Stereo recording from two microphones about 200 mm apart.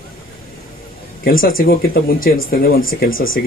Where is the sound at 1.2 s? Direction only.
45° left (ahead or behind).